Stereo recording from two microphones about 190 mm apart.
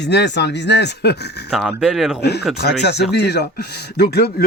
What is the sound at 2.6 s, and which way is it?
Speech, 60° left (ahead or behind).